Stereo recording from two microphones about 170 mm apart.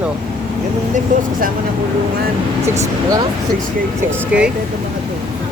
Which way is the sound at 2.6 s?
15° right (ahead or behind).